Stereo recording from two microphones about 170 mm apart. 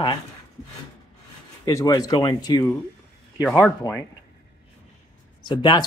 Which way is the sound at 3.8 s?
20° left (ahead or behind).